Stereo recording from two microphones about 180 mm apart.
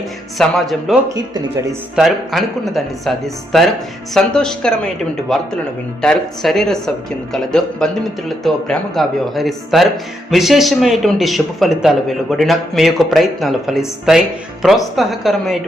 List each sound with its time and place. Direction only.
0.3 s a man's voice: centre (ahead or behind)
1.0 s speech: 20° right (ahead or behind)
2.0 s a man's voice: centre (ahead or behind)